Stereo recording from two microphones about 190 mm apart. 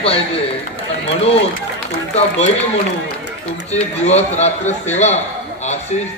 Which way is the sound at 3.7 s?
35° left (ahead or behind).